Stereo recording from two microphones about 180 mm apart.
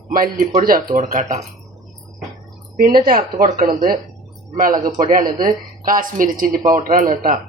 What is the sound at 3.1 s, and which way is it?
Speech, 50° right (ahead or behind).